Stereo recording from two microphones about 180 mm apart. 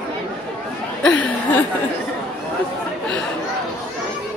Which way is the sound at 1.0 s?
10° left (ahead or behind).